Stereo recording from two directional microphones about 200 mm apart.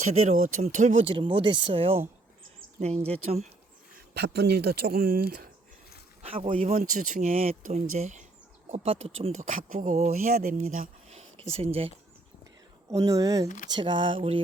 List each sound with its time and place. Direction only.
0.1 s speech: 35° right (ahead or behind)
3.1 s speech: 30° right (ahead or behind)
4.1 s speech: 55° right (ahead or behind)
6.2 s speech: 25° right (ahead or behind)
12.9 s speech: 15° right (ahead or behind)